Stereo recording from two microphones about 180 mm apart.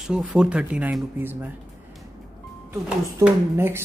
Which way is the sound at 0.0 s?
Centre (ahead or behind).